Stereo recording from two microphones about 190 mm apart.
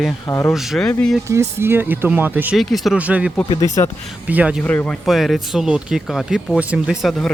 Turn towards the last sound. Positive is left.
turn(degrees=0)  # may be behind; listen again after turning